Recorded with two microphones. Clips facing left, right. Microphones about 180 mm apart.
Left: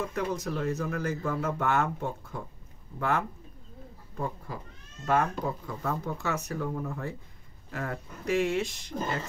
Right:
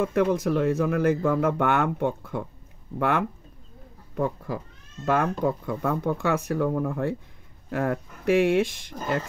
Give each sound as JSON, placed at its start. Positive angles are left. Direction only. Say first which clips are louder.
{"t": 0.0, "sound": "speech", "louder": "right 9 dB", "side_deg": -60}
{"t": 5.0, "sound": "speech", "louder": "right 4 dB", "side_deg": -70}